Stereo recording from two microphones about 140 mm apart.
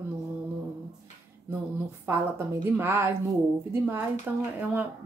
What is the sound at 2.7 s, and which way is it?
Speech, 15° right (ahead or behind).